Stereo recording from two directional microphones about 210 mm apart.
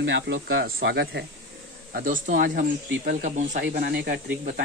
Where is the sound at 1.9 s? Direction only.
40° right (ahead or behind).